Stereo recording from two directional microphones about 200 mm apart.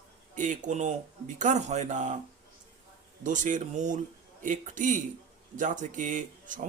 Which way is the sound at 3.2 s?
40° right (ahead or behind).